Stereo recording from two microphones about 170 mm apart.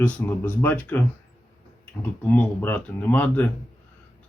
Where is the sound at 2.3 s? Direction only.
10° left (ahead or behind).